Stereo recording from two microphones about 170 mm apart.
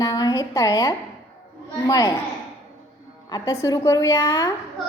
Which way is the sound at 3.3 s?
20° left (ahead or behind).